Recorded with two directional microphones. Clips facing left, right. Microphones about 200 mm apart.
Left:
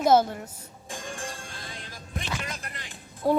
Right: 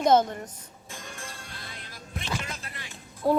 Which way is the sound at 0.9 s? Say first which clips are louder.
Left 6 dB; 30° left (ahead or behind).